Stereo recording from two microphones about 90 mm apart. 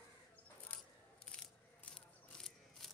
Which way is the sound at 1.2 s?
15° left (ahead or behind).